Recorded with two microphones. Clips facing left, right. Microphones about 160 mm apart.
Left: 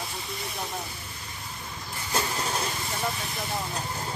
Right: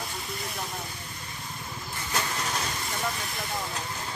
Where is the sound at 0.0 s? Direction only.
Centre (ahead or behind).